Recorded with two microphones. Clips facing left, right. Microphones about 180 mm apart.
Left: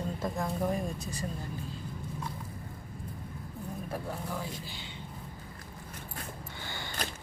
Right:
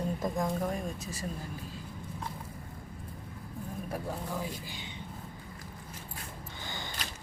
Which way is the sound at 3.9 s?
15° right (ahead or behind).